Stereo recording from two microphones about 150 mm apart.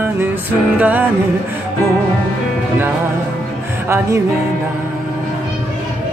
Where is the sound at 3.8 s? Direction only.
20° right (ahead or behind).